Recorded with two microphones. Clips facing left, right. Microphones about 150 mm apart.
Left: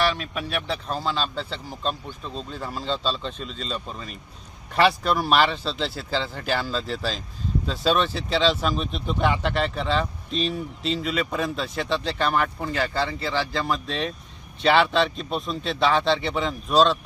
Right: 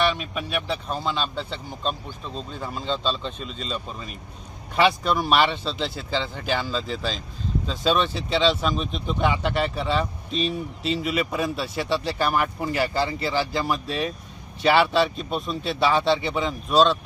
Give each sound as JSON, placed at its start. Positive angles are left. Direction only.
{"t": 0.0, "sound": "speech", "side_deg": 0}